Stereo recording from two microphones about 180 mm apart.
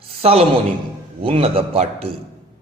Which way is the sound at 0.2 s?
35° right (ahead or behind).